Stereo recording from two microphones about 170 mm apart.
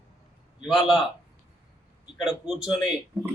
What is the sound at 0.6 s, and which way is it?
Speech, centre (ahead or behind).